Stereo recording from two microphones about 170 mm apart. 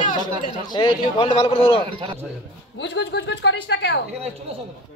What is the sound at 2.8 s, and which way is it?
A man's voice, 90° left.